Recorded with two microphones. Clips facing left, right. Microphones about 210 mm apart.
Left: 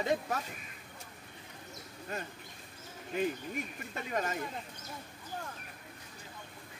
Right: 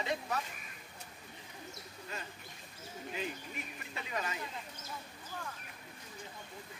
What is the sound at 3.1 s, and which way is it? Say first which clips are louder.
Speech: left 9 dB; 50° left (ahead or behind).